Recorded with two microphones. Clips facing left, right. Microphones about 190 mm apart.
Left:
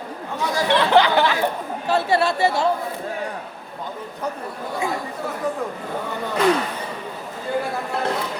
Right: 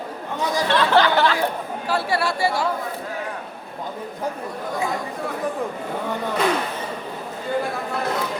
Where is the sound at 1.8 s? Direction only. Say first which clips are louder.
Left 4 dB; 25° left (ahead or behind).